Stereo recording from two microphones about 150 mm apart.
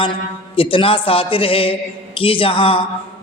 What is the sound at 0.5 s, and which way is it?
A man's voice, 35° left (ahead or behind).